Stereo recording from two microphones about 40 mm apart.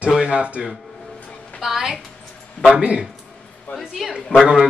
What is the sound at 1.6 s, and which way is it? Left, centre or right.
Speech, centre.